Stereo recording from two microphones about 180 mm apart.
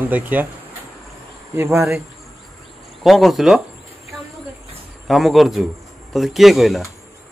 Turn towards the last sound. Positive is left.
turn(degrees=0)  # may be behind; listen again after turning